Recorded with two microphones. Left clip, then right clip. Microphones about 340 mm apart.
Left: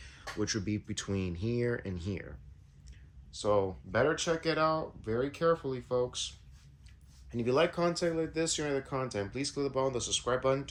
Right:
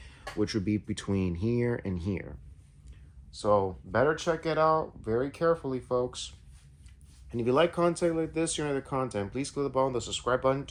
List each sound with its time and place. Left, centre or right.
0.2 s speech: centre
3.4 s speech: centre